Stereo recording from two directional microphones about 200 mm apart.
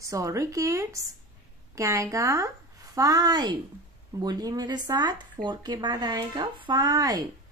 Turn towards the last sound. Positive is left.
turn(degrees=-20)  # may be behind; listen again after turning